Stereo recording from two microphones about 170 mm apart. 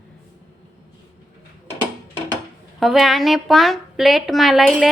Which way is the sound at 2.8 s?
Centre (ahead or behind).